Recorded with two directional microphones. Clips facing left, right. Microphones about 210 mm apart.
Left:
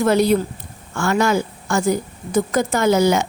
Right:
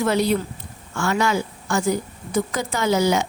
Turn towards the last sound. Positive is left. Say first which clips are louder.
# left 4 dB
turn(degrees=50)  # may be behind; listen again after turning